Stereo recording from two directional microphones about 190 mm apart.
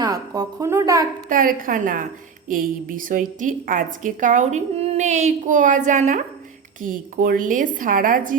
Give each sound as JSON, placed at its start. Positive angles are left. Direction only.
{"t": 0.0, "sound": "a woman's voice", "side_deg": -20}
{"t": 1.3, "sound": "a woman's voice", "side_deg": -45}